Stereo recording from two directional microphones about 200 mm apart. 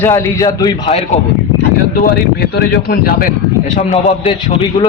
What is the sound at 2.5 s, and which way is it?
Speech, 50° left (ahead or behind).